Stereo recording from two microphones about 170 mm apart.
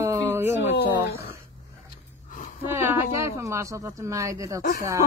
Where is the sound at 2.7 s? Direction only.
15° right (ahead or behind).